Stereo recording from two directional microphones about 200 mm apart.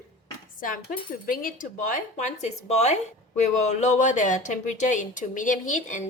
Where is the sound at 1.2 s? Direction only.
45° left (ahead or behind).